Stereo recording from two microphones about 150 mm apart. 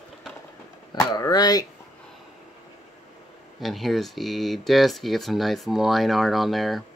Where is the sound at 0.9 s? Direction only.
25° left (ahead or behind).